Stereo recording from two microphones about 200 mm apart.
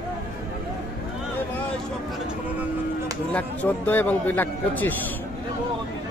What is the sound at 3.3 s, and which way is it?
Speech, 10° left (ahead or behind).